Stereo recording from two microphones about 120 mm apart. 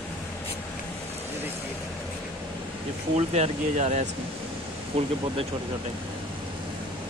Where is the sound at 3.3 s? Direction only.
70° right (ahead or behind).